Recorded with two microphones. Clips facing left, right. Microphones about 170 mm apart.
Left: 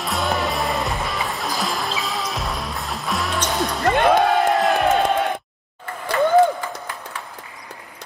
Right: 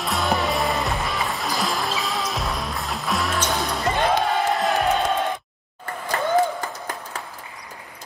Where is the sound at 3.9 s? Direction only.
65° left (ahead or behind).